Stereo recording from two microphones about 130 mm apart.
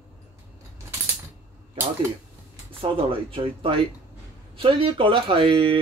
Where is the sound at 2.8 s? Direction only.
45° right (ahead or behind).